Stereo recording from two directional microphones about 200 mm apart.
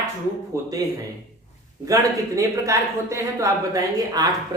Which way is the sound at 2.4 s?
15° right (ahead or behind).